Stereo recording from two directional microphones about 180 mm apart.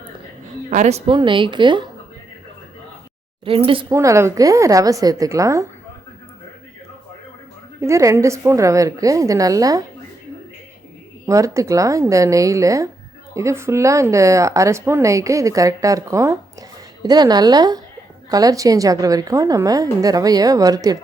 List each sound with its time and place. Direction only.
0.7 s a woman's voice: 40° right (ahead or behind)
3.4 s a woman's voice: 30° right (ahead or behind)
3.9 s speech: 15° right (ahead or behind)
7.8 s speech: 15° right (ahead or behind)
11.3 s a woman's voice: 15° right (ahead or behind)